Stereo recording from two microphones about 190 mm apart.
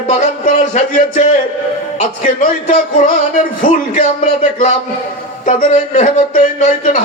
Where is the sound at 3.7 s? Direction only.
45° left (ahead or behind).